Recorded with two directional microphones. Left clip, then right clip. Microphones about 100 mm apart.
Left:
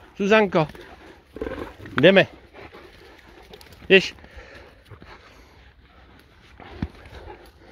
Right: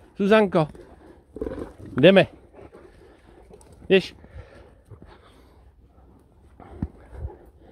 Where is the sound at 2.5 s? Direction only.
30° left (ahead or behind).